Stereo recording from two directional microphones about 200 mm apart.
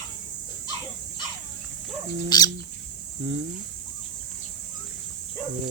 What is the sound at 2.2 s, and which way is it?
Fowl, 20° left (ahead or behind).